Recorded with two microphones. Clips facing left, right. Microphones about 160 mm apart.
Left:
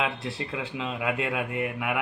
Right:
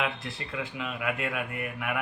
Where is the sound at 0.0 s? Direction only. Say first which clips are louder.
Left 3 dB; 25° left (ahead or behind).